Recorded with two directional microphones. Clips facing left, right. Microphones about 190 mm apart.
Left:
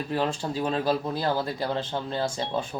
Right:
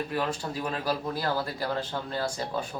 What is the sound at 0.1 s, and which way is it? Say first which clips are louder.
Speech: left 3 dB; 30° left (ahead or behind).